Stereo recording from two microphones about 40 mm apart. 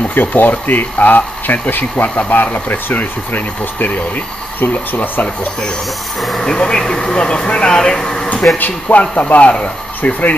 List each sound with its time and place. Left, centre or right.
0.1 s speech: left
6.4 s speech: centre
8.5 s speech: left
9.3 s speech: left